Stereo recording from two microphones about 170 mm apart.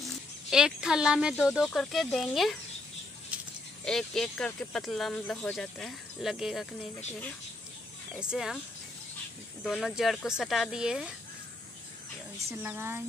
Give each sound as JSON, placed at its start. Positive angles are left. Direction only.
{"t": 0.5, "sound": "speech", "side_deg": -5}
{"t": 3.3, "sound": "snake", "side_deg": -10}
{"t": 3.8, "sound": "speech", "side_deg": 5}
{"t": 8.2, "sound": "speech", "side_deg": -5}
{"t": 9.6, "sound": "speech", "side_deg": 0}
{"t": 12.4, "sound": "a woman's voice", "side_deg": -15}